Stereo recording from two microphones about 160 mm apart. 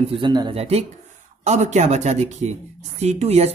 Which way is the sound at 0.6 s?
40° right (ahead or behind).